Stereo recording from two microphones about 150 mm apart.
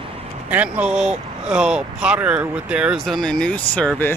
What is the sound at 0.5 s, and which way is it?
Speech, 10° right (ahead or behind).